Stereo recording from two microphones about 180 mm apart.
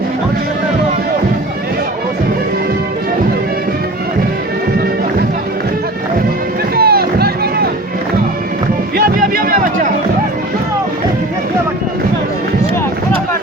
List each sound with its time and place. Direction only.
6.7 s music: 60° right (ahead or behind)
9.0 s music: 55° right (ahead or behind)